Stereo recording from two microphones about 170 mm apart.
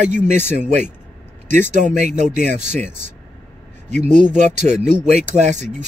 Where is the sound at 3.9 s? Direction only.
45° right (ahead or behind).